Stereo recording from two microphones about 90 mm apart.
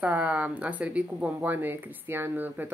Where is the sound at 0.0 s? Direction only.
15° right (ahead or behind).